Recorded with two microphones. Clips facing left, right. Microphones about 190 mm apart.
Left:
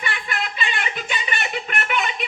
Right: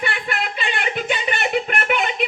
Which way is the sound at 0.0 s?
60° right (ahead or behind).